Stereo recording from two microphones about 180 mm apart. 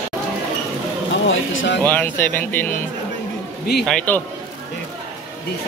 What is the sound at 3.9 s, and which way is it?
Speech, 5° left (ahead or behind).